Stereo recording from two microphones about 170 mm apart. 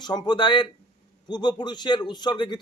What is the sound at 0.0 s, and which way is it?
A man's voice, 25° left (ahead or behind).